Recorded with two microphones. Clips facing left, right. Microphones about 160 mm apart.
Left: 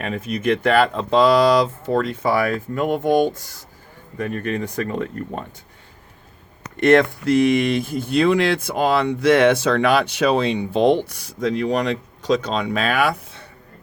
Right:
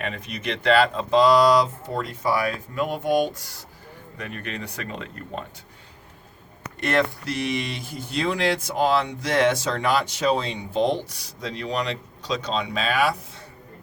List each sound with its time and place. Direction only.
0.3 s speech: 50° left (ahead or behind)
6.7 s speech: 50° left (ahead or behind)